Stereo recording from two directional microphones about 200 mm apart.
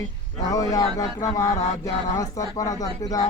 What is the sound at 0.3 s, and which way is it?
Speech, 15° left (ahead or behind).